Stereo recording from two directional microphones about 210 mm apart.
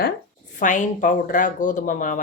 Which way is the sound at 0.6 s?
35° left (ahead or behind).